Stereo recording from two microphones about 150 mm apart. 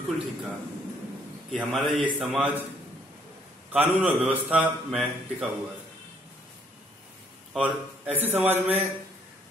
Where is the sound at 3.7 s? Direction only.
10° right (ahead or behind).